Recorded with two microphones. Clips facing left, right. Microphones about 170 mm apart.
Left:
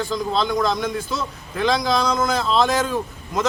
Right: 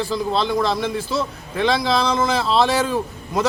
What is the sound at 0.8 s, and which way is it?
Speech, 30° right (ahead or behind).